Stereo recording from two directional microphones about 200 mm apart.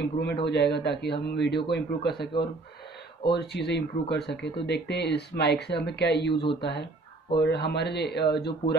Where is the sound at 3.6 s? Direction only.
55° left (ahead or behind).